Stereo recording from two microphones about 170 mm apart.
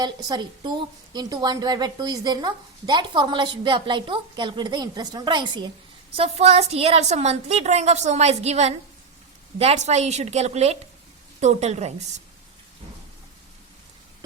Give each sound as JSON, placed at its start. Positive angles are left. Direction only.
{"t": 0.0, "sound": "a woman's voice", "side_deg": -25}
{"t": 6.1, "sound": "a woman's voice", "side_deg": -40}